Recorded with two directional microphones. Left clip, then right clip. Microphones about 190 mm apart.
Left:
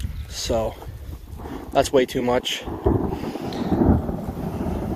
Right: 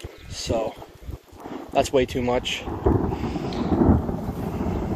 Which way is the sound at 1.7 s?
25° left (ahead or behind).